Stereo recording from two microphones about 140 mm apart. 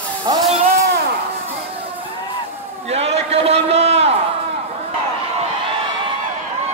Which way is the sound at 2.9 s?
50° right (ahead or behind).